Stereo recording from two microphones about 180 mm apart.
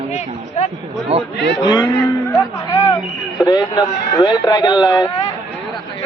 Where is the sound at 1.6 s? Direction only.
25° left (ahead or behind).